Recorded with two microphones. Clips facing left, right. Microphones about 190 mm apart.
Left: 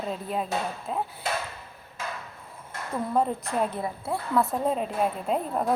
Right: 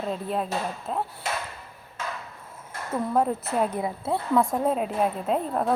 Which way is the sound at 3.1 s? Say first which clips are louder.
Right 1 dB; 5° right (ahead or behind).